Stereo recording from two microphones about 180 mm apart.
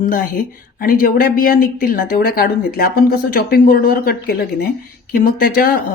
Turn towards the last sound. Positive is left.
turn(degrees=55)  # may be behind; listen again after turning